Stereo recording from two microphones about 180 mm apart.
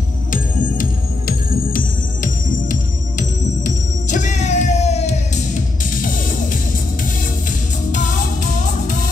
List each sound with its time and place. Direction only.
0.3 s music: 50° left (ahead or behind)
7.9 s music: 45° left (ahead or behind)